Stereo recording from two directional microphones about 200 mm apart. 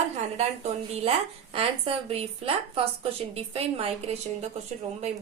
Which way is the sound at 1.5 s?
30° right (ahead or behind).